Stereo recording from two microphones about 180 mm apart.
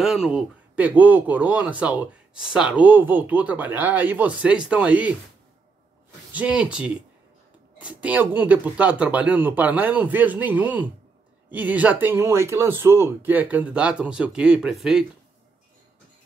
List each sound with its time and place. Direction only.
0.0 s speech: centre (ahead or behind)
6.3 s speech: 5° right (ahead or behind)